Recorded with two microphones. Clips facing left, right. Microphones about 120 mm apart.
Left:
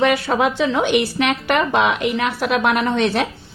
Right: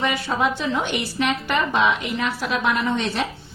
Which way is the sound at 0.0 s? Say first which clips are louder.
Left 6 dB; 80° left.